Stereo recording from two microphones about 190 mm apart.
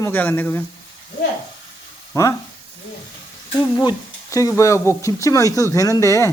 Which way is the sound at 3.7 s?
20° left (ahead or behind).